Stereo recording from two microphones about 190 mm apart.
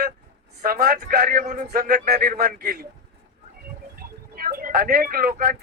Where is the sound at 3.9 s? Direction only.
50° right (ahead or behind).